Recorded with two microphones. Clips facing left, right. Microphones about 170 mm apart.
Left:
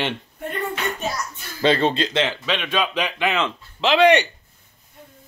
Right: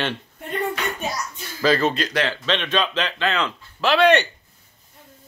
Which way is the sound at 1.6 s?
30° left (ahead or behind).